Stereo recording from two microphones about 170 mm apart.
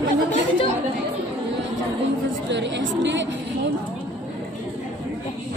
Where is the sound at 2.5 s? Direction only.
90° right.